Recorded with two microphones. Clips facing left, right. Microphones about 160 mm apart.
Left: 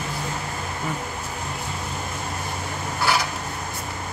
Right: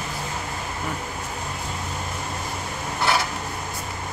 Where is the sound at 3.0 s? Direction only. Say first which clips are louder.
Even; 25° right (ahead or behind).